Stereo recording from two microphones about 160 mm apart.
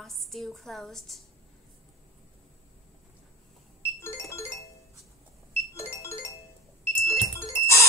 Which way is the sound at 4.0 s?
15° left (ahead or behind).